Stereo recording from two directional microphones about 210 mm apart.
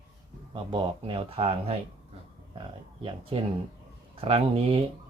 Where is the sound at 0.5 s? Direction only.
25° right (ahead or behind).